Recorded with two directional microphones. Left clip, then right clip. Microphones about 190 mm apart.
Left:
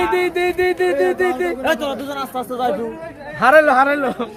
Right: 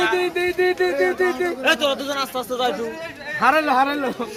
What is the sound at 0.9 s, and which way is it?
Music, 35° left (ahead or behind).